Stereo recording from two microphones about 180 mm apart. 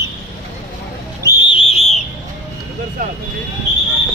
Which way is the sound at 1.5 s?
30° left (ahead or behind).